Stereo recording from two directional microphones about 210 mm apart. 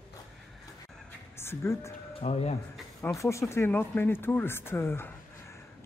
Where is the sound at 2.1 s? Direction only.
30° left (ahead or behind).